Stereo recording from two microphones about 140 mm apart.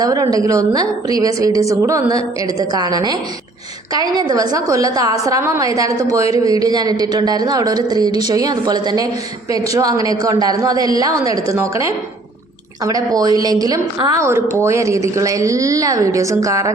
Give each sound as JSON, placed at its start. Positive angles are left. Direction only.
{"t": 0.0, "sound": "a woman's voice", "side_deg": -25}